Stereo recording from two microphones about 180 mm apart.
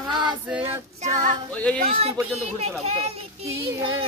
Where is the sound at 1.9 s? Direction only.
35° right (ahead or behind).